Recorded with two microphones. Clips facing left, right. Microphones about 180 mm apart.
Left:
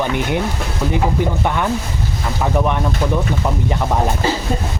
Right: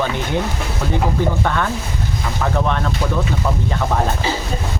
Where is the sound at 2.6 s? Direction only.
15° left (ahead or behind).